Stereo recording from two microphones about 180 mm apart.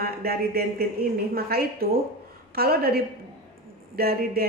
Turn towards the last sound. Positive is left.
turn(degrees=-60)  # may be behind; listen again after turning